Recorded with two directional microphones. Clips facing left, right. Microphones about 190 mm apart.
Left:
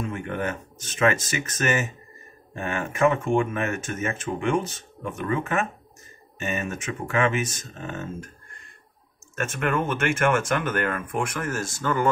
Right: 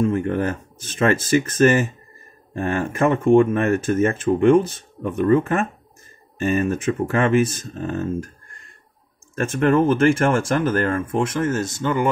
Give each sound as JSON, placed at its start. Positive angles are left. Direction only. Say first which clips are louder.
{"t": 0.0, "sound": "speech", "louder": "right 9 dB", "side_deg": -35}
{"t": 9.3, "sound": "speech", "louder": "right 8 dB", "side_deg": -35}